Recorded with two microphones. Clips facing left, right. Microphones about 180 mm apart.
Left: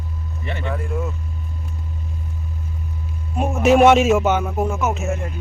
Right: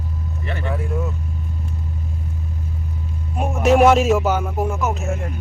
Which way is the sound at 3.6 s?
Centre (ahead or behind).